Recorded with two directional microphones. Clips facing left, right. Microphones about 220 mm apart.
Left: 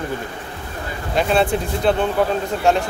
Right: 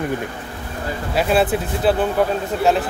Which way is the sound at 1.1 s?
5° right (ahead or behind).